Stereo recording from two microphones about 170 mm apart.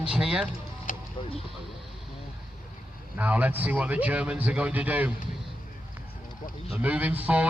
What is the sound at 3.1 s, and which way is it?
A man's voice, 10° right (ahead or behind).